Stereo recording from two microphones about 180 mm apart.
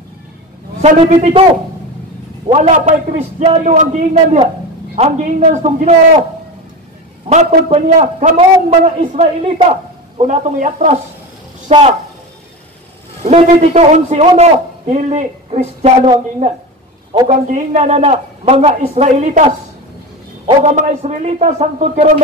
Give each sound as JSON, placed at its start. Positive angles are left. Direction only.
{"t": 0.8, "sound": "a man's voice", "side_deg": -40}
{"t": 2.4, "sound": "a man's voice", "side_deg": -35}
{"t": 7.2, "sound": "a man's voice", "side_deg": -35}
{"t": 13.2, "sound": "a man's voice", "side_deg": -35}
{"t": 17.3, "sound": "a man's voice", "side_deg": -40}
{"t": 20.6, "sound": "a man's voice", "side_deg": -40}